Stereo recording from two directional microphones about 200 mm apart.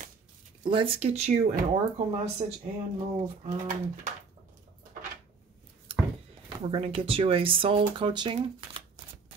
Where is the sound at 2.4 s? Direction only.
30° right (ahead or behind).